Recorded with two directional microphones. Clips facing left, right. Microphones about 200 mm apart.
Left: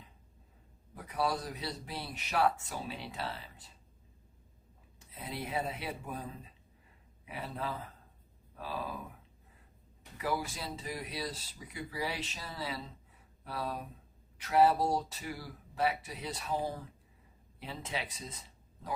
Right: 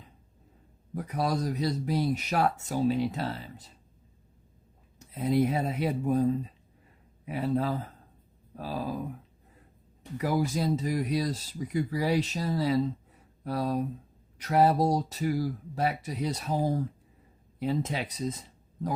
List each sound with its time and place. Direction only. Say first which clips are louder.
0.9 s speech: right 5 dB; 40° right (ahead or behind)
4.9 s speech: right 16 dB; 40° right (ahead or behind)
10.2 s speech: right 8 dB; 40° right (ahead or behind)